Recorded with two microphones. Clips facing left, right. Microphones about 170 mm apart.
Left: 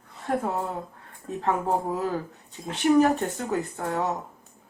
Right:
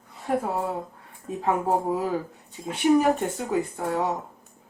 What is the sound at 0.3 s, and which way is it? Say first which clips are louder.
Speech: right 1 dB; 10° right (ahead or behind).